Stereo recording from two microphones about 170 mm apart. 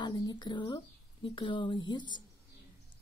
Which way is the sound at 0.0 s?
25° left (ahead or behind).